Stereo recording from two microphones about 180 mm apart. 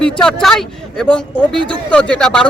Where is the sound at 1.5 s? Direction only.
25° right (ahead or behind).